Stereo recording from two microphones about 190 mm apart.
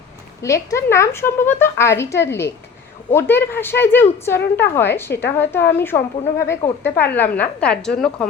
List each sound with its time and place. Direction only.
0.4 s a woman's voice: 15° left (ahead or behind)